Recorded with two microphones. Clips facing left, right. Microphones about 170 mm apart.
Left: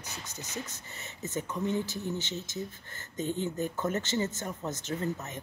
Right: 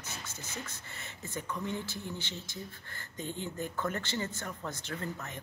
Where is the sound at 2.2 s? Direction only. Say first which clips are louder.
Left 5 dB; 45° left (ahead or behind).